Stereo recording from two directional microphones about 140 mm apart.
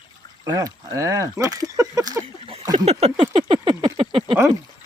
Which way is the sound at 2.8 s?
45° right (ahead or behind).